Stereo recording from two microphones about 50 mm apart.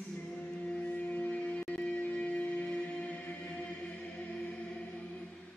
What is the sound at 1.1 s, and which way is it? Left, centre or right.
Music, left.